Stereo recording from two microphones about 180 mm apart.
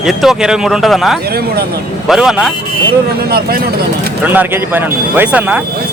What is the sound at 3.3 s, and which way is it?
Speech, 55° right (ahead or behind).